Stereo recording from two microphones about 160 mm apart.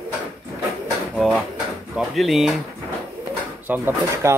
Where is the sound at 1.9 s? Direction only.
Centre (ahead or behind).